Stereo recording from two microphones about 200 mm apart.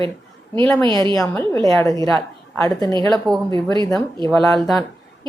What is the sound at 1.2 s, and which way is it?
Speech, 15° left (ahead or behind).